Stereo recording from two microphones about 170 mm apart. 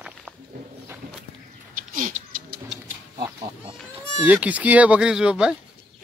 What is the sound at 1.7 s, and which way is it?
Dog, 55° right (ahead or behind).